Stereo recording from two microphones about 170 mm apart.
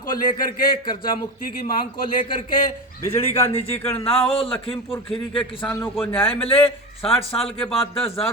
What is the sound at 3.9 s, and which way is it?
Speech, 35° left (ahead or behind).